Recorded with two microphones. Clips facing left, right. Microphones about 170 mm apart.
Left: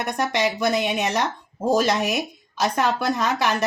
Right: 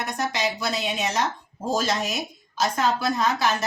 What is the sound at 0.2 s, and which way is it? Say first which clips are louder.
A woman's voice: left 5 dB; 60° left (ahead or behind).